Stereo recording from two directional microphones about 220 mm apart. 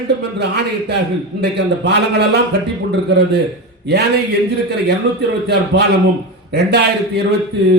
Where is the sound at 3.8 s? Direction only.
50° right (ahead or behind).